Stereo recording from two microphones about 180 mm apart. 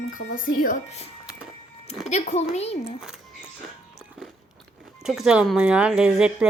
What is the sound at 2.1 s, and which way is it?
Speech, 35° left (ahead or behind).